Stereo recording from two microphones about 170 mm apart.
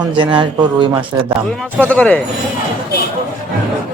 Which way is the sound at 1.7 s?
5° left (ahead or behind).